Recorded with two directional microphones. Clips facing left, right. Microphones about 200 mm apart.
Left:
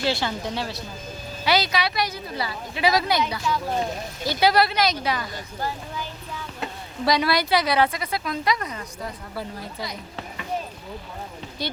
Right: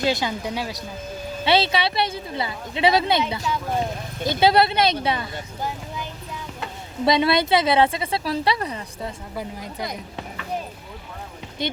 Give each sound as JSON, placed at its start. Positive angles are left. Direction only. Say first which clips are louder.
{"t": 0.0, "sound": "a woman's voice", "louder": "right 2 dB", "side_deg": -15}
{"t": 1.5, "sound": "a woman's voice", "louder": "right 2 dB", "side_deg": -25}
{"t": 9.3, "sound": "a woman's voice", "louder": "right 1 dB", "side_deg": -15}